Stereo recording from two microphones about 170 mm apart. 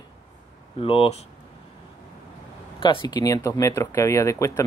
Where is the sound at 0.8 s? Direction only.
35° left (ahead or behind).